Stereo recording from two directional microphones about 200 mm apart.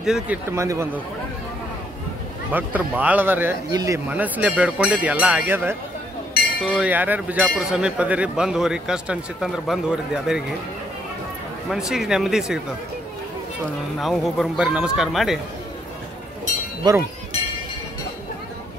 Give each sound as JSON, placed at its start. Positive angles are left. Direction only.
{"t": 0.0, "sound": "speech", "side_deg": -5}
{"t": 2.5, "sound": "speech", "side_deg": -10}
{"t": 11.7, "sound": "speech", "side_deg": 0}
{"t": 13.9, "sound": "speech", "side_deg": 0}
{"t": 16.8, "sound": "speech", "side_deg": -20}